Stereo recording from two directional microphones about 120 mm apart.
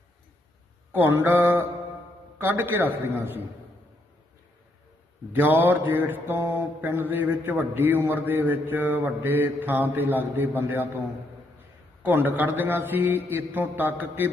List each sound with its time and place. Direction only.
0.9 s mantra: 15° right (ahead or behind)
5.3 s mantra: 15° right (ahead or behind)
12.0 s mantra: 15° right (ahead or behind)